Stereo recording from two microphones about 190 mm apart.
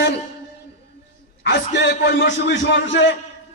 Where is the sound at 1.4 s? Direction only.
65° left (ahead or behind).